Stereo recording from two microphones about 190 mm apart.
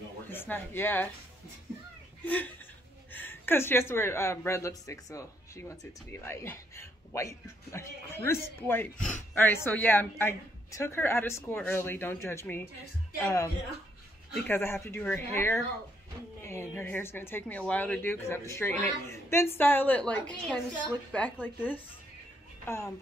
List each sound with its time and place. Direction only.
0.3 s speech: 10° left (ahead or behind)
2.2 s a woman's voice: 10° left (ahead or behind)